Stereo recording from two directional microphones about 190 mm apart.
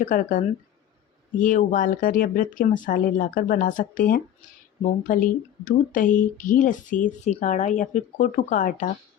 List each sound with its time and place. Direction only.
0.0 s speech: 45° left (ahead or behind)